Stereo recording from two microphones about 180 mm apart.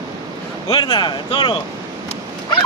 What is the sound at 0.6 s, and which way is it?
Speech, 25° left (ahead or behind).